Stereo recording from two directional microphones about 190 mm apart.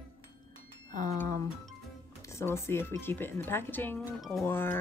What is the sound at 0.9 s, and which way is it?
Music, 40° right (ahead or behind).